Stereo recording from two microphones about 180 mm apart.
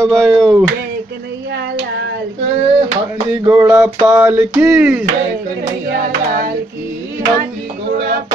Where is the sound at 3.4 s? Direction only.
10° right (ahead or behind).